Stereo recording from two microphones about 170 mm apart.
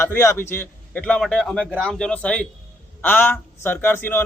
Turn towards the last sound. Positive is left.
turn(degrees=15)  # may be behind; listen again after turning